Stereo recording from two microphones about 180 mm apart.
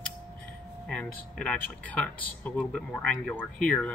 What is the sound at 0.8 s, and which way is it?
Speech, 5° left (ahead or behind).